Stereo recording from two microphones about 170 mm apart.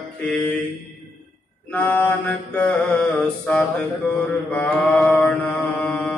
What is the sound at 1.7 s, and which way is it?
Mantra, 10° left (ahead or behind).